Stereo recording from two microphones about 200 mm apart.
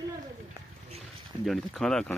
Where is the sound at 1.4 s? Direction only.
Centre (ahead or behind).